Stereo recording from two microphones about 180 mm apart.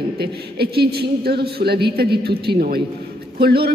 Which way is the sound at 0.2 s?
60° right (ahead or behind).